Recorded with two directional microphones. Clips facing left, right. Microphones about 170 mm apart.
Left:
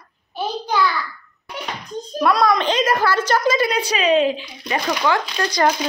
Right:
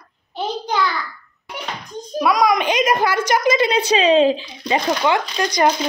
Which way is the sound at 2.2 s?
10° right (ahead or behind).